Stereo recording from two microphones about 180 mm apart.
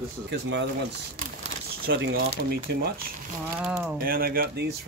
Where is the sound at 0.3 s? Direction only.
70° right (ahead or behind).